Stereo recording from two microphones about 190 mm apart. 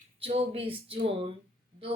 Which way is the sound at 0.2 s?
30° right (ahead or behind).